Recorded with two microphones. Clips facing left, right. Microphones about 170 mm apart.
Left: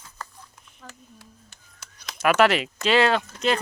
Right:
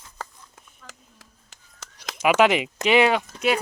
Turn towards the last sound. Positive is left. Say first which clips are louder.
# right 1 dB
turn(degrees=-10)  # may be behind; listen again after turning